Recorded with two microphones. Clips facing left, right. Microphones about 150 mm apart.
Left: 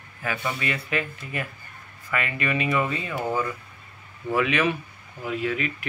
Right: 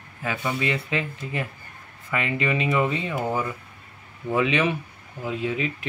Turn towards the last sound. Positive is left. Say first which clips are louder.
# even
turn(degrees=-20)  # may be behind; listen again after turning